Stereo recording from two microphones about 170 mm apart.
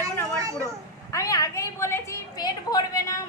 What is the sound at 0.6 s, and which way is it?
A child's voice, 20° left (ahead or behind).